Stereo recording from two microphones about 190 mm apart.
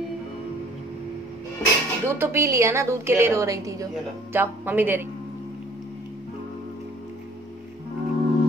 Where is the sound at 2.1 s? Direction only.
15° right (ahead or behind).